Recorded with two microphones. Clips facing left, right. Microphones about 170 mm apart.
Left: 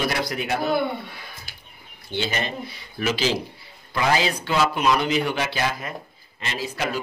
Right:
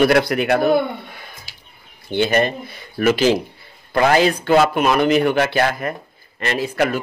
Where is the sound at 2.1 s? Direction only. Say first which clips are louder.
Right 9 dB; 55° right (ahead or behind).